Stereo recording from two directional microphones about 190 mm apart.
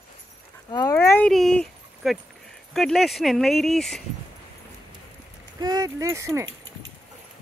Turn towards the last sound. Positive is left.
turn(degrees=-15)  # may be behind; listen again after turning